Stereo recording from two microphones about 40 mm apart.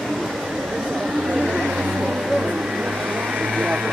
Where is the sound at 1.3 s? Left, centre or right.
Centre.